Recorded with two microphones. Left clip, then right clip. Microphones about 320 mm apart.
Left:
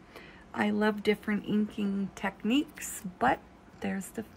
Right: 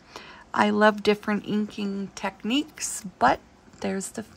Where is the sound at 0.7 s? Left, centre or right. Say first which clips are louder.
Right 7 dB; centre.